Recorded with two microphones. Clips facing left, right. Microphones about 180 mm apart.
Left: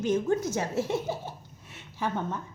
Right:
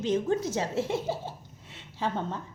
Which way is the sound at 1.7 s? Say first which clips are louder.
Even; 25° right (ahead or behind).